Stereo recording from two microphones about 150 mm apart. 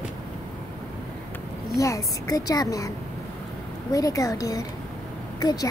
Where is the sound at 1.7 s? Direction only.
20° left (ahead or behind).